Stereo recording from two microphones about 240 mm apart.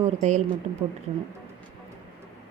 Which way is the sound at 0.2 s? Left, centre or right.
Right.